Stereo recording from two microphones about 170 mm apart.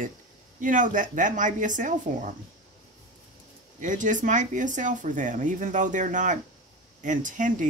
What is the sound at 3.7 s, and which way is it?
Speech, 50° right (ahead or behind).